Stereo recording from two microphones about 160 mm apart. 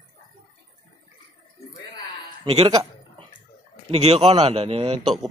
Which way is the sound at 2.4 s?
40° right (ahead or behind).